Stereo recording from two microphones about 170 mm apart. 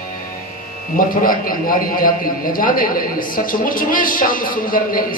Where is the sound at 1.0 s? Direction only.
55° left (ahead or behind).